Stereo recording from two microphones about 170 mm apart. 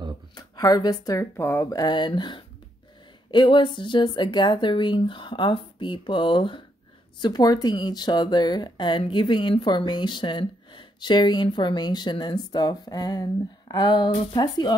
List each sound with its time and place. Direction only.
0.4 s speech: 20° left (ahead or behind)